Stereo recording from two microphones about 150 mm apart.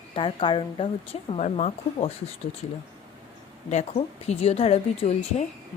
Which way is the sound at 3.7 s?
50° left (ahead or behind).